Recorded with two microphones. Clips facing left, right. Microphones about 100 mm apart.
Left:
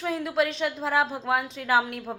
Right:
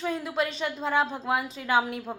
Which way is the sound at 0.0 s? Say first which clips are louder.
Left 3 dB; centre (ahead or behind).